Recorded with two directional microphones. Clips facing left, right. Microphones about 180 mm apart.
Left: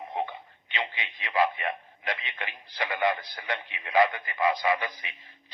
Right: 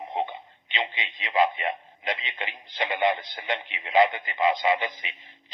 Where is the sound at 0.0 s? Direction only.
20° right (ahead or behind).